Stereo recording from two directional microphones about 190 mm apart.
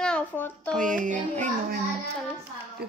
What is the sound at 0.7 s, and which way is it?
Music, 45° right (ahead or behind).